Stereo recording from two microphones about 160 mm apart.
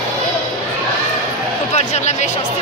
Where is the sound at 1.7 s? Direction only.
45° left (ahead or behind).